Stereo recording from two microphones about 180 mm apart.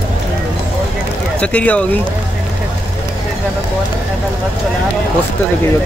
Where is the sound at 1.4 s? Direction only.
5° left (ahead or behind).